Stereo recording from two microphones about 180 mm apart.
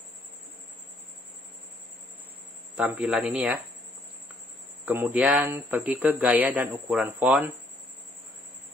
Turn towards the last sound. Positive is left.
turn(degrees=-5)  # may be behind; listen again after turning